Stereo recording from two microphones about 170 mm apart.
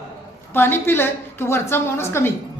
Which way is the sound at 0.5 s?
15° left (ahead or behind).